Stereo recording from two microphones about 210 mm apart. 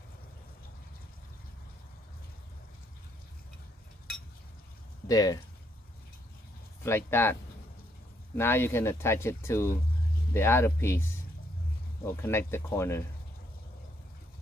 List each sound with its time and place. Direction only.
5.0 s speech: 15° left (ahead or behind)
6.8 s speech: 10° left (ahead or behind)
8.4 s speech: 10° left (ahead or behind)